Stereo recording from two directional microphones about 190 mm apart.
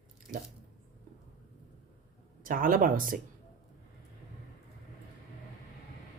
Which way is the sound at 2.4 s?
45° right (ahead or behind).